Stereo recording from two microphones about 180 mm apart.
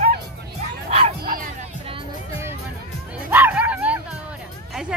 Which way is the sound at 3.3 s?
10° right (ahead or behind).